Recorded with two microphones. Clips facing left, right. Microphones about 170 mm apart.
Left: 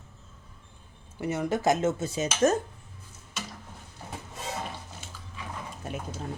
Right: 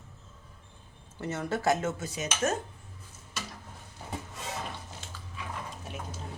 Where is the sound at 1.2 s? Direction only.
15° left (ahead or behind); by 2.6 s 35° left (ahead or behind).